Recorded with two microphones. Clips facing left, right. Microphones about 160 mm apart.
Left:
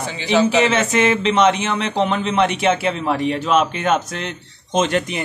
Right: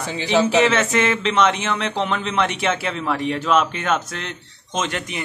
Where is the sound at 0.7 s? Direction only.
15° left (ahead or behind).